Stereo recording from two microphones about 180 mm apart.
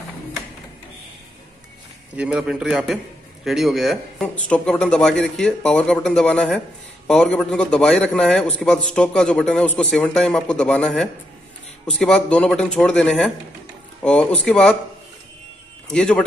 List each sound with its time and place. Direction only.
2.1 s a man's voice: 5° right (ahead or behind)
15.9 s a man's voice: 5° left (ahead or behind)